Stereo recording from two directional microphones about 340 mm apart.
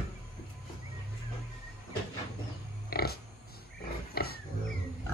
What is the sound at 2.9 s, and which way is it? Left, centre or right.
Pig, left.